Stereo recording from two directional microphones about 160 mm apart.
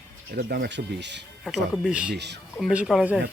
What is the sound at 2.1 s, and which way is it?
Speech, 90° right.